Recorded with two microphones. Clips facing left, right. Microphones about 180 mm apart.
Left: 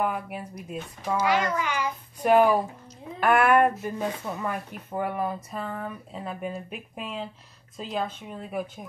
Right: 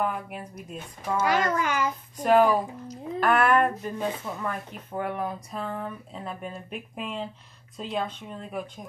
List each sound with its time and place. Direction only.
0.0 s speech: 5° left (ahead or behind)
1.4 s a child's voice: 45° right (ahead or behind)
2.2 s speech: 10° left (ahead or behind)